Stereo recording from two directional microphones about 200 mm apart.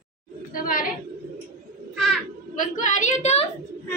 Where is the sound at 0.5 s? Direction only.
45° left (ahead or behind).